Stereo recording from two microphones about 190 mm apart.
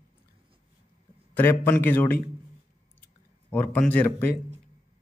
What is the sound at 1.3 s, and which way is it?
Speech, 10° left (ahead or behind).